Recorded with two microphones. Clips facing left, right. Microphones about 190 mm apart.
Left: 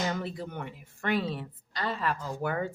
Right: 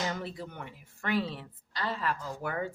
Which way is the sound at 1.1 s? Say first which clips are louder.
Left 1 dB; 50° left (ahead or behind).